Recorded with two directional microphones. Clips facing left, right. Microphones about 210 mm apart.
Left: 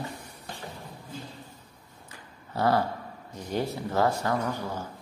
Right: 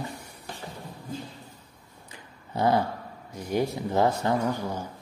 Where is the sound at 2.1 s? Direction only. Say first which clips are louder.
Right 2 dB; 20° right (ahead or behind).